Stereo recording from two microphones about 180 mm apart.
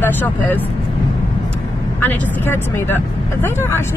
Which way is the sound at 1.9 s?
10° left (ahead or behind).